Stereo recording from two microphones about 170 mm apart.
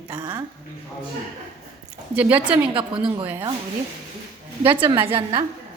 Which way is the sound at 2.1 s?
10° right (ahead or behind).